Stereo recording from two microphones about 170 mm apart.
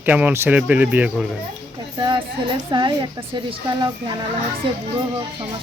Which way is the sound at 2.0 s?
25° right (ahead or behind).